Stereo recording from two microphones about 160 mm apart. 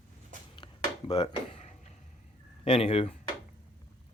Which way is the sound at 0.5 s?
35° left (ahead or behind).